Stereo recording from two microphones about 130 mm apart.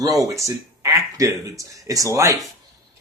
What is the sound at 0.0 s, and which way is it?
Speech, 30° right (ahead or behind).